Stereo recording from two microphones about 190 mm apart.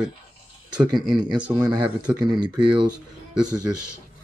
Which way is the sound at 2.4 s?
25° right (ahead or behind).